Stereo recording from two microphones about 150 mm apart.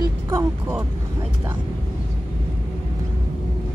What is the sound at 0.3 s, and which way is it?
Speech, 15° right (ahead or behind).